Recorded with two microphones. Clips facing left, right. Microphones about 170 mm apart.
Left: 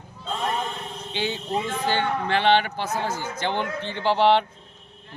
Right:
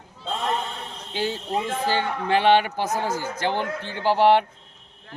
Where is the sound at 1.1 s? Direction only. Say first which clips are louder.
Right 1 dB; centre (ahead or behind).